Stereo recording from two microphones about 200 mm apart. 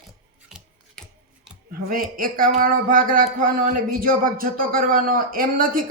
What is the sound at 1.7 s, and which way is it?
Speech, 45° right (ahead or behind).